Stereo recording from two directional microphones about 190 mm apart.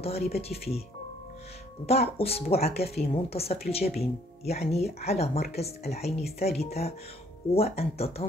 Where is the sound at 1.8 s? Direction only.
30° left (ahead or behind).